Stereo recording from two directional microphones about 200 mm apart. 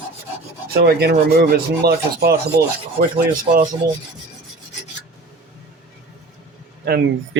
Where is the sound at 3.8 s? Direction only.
50° right (ahead or behind).